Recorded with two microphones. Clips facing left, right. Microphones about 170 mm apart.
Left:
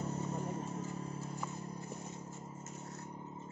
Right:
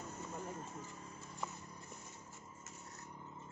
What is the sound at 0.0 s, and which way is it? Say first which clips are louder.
Vehicle: left 7 dB; 35° left (ahead or behind).